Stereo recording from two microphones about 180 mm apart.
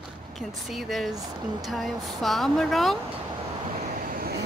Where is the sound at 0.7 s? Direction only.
Centre (ahead or behind).